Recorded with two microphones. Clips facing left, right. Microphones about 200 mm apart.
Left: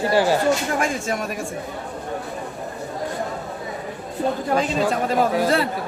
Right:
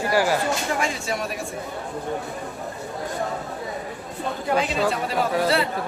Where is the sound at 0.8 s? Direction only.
45° left (ahead or behind).